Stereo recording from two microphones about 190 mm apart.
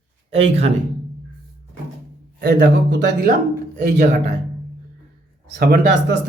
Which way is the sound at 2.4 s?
60° right (ahead or behind).